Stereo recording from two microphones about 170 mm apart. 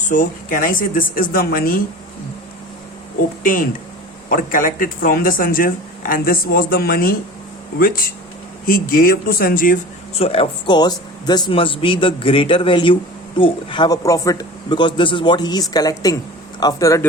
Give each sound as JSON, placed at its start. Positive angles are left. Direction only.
{"t": 0.1, "sound": "speech", "side_deg": 50}
{"t": 4.3, "sound": "speech", "side_deg": 55}
{"t": 10.2, "sound": "a man's voice", "side_deg": 35}